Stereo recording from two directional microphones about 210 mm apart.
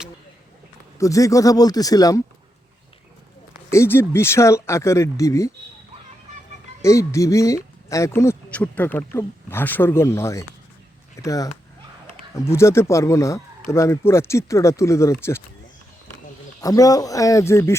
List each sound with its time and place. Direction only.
0.9 s speech: 15° left (ahead or behind)
3.7 s speech: 10° left (ahead or behind)
6.8 s speech: 15° left (ahead or behind)
16.6 s speech: 15° left (ahead or behind)